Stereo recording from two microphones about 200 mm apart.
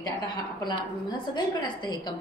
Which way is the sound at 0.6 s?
20° left (ahead or behind).